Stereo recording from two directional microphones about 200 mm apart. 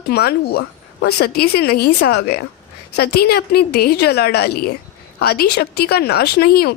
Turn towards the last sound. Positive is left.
turn(degrees=50)  # may be behind; listen again after turning